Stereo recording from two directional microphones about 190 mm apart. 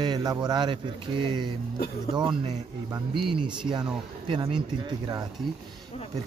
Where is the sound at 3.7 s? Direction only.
25° right (ahead or behind).